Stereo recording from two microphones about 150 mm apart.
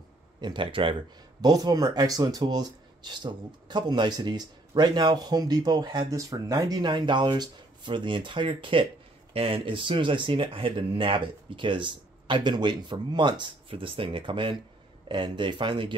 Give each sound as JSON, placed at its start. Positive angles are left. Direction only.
{"t": 0.4, "sound": "speech", "side_deg": -30}